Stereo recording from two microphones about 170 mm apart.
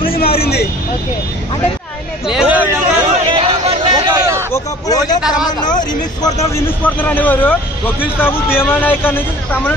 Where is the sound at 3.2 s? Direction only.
35° right (ahead or behind).